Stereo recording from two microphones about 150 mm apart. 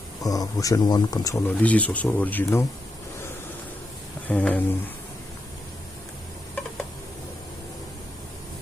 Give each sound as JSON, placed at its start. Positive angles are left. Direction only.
{"t": 0.2, "sound": "speech", "side_deg": 25}
{"t": 1.5, "sound": "speech", "side_deg": 10}
{"t": 4.3, "sound": "speech", "side_deg": 10}